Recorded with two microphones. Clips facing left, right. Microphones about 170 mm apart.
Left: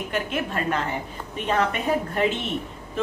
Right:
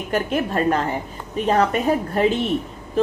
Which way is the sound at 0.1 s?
40° right (ahead or behind).